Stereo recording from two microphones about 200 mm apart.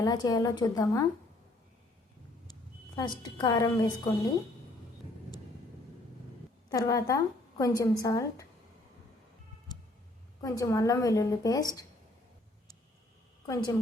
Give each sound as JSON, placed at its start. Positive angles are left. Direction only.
{"t": 0.0, "sound": "a woman's voice", "side_deg": 20}
{"t": 2.5, "sound": "a woman's voice", "side_deg": 20}
{"t": 6.7, "sound": "a woman's voice", "side_deg": 20}
{"t": 10.4, "sound": "a woman's voice", "side_deg": 15}
{"t": 13.4, "sound": "a woman's voice", "side_deg": 20}